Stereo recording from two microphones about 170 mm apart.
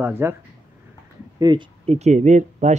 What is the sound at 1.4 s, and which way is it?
Speech, 25° right (ahead or behind).